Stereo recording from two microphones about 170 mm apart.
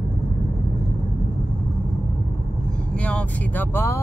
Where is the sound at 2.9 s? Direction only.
5° left (ahead or behind).